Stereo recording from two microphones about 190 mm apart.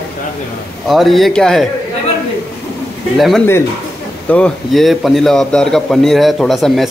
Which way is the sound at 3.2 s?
Centre (ahead or behind).